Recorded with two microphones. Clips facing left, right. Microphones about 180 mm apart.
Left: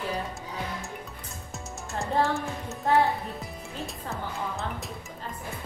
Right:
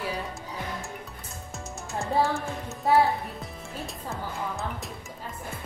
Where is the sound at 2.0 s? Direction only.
Centre (ahead or behind).